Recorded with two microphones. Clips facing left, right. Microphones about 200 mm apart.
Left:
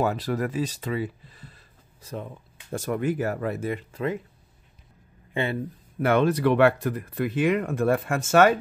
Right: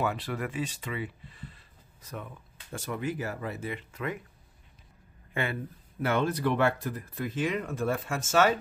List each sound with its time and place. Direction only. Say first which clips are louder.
0.0 s speech: left 6 dB; 40° left (ahead or behind)
2.7 s speech: left 7 dB; 45° left (ahead or behind)
3.9 s speech: left 6 dB; 30° left (ahead or behind)
5.3 s speech: left 5 dB; 25° left (ahead or behind)
5.9 s speech: left 7 dB; 60° left (ahead or behind)